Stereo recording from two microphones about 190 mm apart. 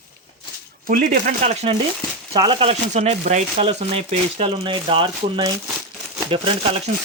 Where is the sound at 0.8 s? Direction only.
50° right (ahead or behind).